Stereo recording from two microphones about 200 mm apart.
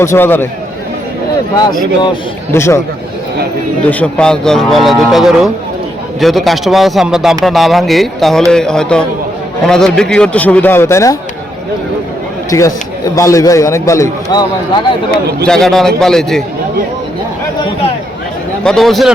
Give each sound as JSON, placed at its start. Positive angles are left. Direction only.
{"t": 0.0, "sound": "a man's voice", "side_deg": 10}
{"t": 2.5, "sound": "a man's voice", "side_deg": 15}
{"t": 3.8, "sound": "a man's voice", "side_deg": 5}
{"t": 12.5, "sound": "a man's voice", "side_deg": 15}
{"t": 15.4, "sound": "speech", "side_deg": 5}
{"t": 18.6, "sound": "speech", "side_deg": 0}